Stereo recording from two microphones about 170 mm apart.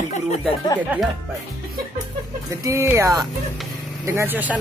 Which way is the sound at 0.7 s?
10° right (ahead or behind).